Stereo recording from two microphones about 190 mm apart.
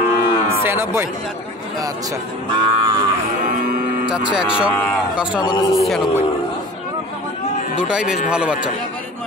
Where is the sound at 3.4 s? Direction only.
50° right (ahead or behind).